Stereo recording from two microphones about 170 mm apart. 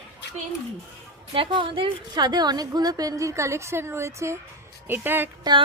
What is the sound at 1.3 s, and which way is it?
A woman's voice, 30° right (ahead or behind).